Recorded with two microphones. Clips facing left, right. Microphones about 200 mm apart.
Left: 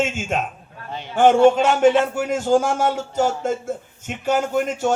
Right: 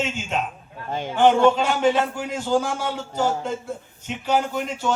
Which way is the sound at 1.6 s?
50° left (ahead or behind).